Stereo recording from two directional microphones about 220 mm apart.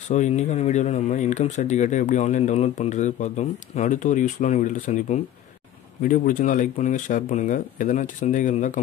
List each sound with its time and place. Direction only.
0.1 s speech: 30° left (ahead or behind)